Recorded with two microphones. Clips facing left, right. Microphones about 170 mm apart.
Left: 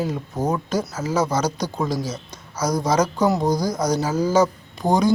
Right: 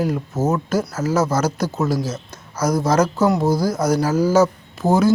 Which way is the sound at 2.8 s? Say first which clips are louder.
Right 2 dB; 10° left (ahead or behind).